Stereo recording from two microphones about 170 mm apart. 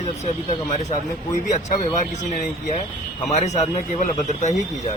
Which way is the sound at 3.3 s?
40° left (ahead or behind).